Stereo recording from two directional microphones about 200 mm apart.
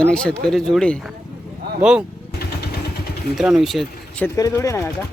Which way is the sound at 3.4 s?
Centre (ahead or behind).